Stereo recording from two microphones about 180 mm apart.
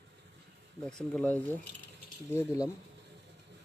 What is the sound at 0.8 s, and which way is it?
Speech, 5° left (ahead or behind).